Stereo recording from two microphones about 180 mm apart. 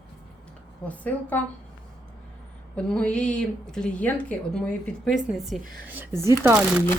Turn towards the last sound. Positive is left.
turn(degrees=-10)  # may be behind; listen again after turning